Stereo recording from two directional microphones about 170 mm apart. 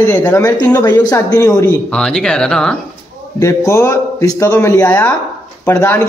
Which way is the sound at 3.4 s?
15° left (ahead or behind).